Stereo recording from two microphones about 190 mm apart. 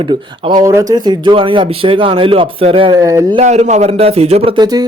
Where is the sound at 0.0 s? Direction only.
25° right (ahead or behind).